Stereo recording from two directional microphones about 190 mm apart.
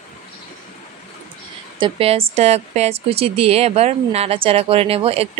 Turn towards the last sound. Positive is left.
turn(degrees=-30)  # may be behind; listen again after turning